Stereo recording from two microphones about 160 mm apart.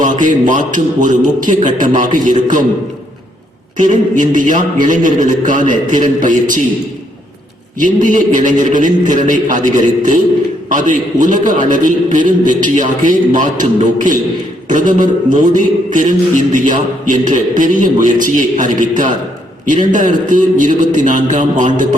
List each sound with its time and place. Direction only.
0.0 s music: 50° right (ahead or behind)
3.8 s music: 50° right (ahead or behind)
7.8 s music: 55° right (ahead or behind)